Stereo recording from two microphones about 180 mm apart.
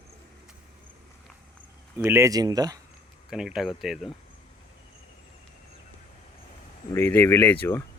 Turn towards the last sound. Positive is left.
turn(degrees=10)  # may be behind; listen again after turning